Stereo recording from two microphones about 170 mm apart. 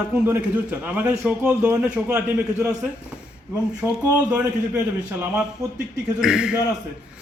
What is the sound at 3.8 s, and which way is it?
Speech, 15° right (ahead or behind).